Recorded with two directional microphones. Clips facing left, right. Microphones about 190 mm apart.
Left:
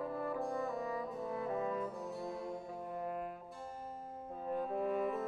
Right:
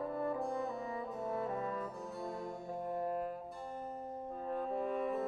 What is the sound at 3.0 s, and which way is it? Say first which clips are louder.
Brass instrument: right 3 dB; 40° right (ahead or behind).